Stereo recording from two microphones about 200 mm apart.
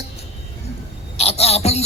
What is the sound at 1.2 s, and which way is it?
Speech, 30° left (ahead or behind).